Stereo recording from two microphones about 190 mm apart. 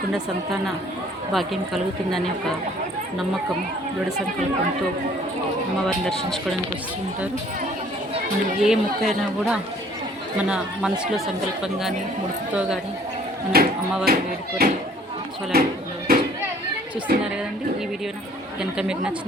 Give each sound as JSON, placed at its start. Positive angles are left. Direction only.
{"t": 1.3, "sound": "a woman's voice", "side_deg": 0}
{"t": 8.6, "sound": "a woman's voice", "side_deg": 0}
{"t": 13.5, "sound": "speech", "side_deg": -55}
{"t": 16.1, "sound": "a sound", "side_deg": -55}
{"t": 18.6, "sound": "a woman's voice", "side_deg": -5}